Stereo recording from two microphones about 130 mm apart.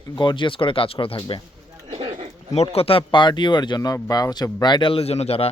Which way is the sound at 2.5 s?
50° left (ahead or behind).